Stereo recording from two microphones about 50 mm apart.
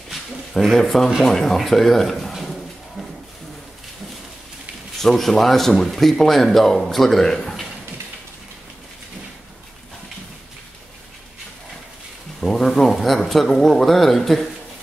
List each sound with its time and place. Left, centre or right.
0.6 s speech: centre
5.0 s a man's voice: centre
12.4 s speech: centre